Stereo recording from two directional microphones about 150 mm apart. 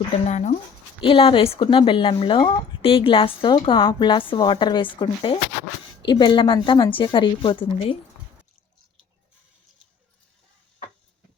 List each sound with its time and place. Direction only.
0.3 s speech: 50° left (ahead or behind)
1.0 s speech: 35° left (ahead or behind)